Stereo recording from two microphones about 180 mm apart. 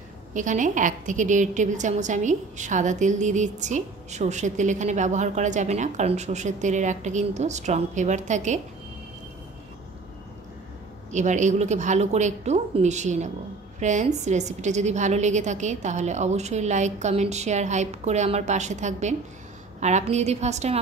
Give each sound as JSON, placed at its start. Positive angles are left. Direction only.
{"t": 0.3, "sound": "a woman's voice", "side_deg": -45}
{"t": 11.1, "sound": "a woman's voice", "side_deg": -40}